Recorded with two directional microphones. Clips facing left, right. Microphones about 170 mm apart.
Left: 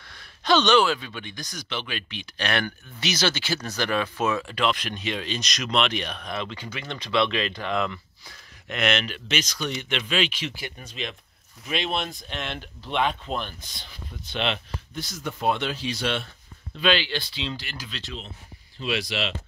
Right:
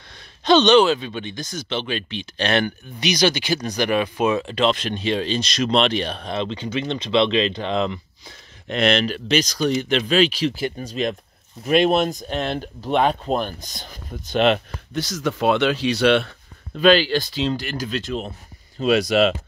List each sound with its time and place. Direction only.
0.4 s speech: 20° right (ahead or behind); by 14.6 s 45° right (ahead or behind)
15.0 s speech: 90° right; by 16.3 s 70° right (ahead or behind)
16.7 s speech: 40° right (ahead or behind)